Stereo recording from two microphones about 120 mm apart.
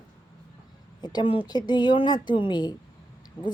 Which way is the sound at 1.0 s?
40° left (ahead or behind).